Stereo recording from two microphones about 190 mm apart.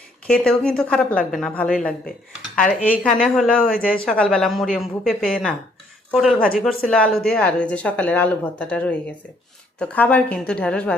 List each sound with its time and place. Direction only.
0.3 s speech: 5° left (ahead or behind)
2.9 s speech: 5° left (ahead or behind)
3.6 s speech: 50° left (ahead or behind)
3.8 s speech: 5° left (ahead or behind)